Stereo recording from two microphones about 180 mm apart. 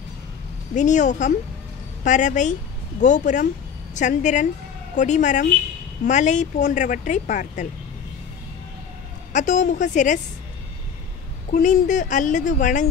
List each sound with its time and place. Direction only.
0.7 s speech: 45° left (ahead or behind)
9.3 s speech: 40° left (ahead or behind)
11.5 s speech: 45° left (ahead or behind)